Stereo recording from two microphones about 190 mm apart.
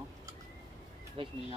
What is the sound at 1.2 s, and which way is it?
Speech, 25° right (ahead or behind).